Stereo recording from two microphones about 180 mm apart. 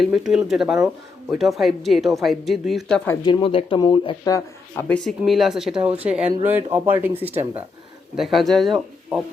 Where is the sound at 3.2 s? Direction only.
25° left (ahead or behind).